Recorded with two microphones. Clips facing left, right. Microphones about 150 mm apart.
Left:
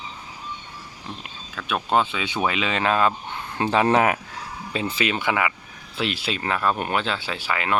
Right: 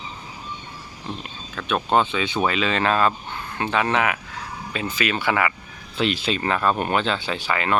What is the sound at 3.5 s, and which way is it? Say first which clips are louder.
Speech: left 3 dB; 30° left (ahead or behind).